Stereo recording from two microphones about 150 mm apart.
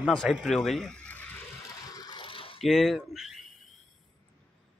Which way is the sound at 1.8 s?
25° left (ahead or behind).